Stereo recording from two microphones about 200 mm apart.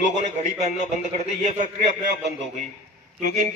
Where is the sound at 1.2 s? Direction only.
35° right (ahead or behind).